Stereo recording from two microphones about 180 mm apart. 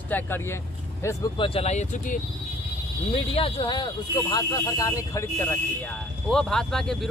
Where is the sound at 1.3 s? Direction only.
30° left (ahead or behind).